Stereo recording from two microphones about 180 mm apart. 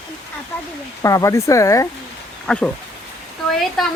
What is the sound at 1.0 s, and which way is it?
Speech, 15° left (ahead or behind).